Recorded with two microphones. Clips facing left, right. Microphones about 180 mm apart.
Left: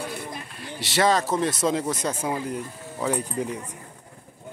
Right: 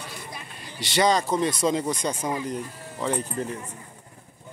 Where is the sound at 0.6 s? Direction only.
Centre (ahead or behind).